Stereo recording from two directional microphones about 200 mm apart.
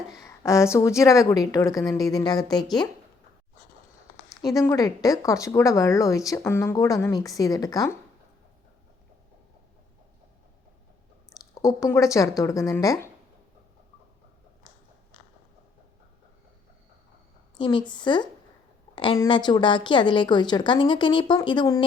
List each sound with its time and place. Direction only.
0.1 s speech: 15° left (ahead or behind)
4.4 s speech: 15° left (ahead or behind)
11.6 s speech: 15° left (ahead or behind)
17.6 s a woman's voice: 20° left (ahead or behind)